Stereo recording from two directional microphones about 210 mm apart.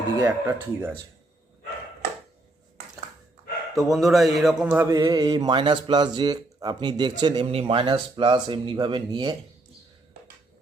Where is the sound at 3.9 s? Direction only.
Centre (ahead or behind); by 9.3 s 20° right (ahead or behind).